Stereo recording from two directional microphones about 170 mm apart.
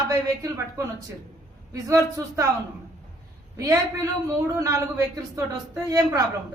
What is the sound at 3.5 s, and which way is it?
A man's voice, 20° right (ahead or behind).